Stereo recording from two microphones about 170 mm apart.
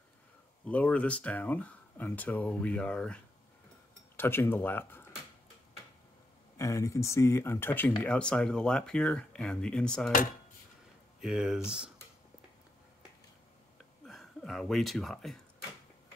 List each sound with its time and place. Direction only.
0.7 s speech: 10° left (ahead or behind)
4.2 s speech: 15° left (ahead or behind)
6.5 s speech: 20° left (ahead or behind)
11.1 s speech: 5° right (ahead or behind)
14.0 s speech: centre (ahead or behind)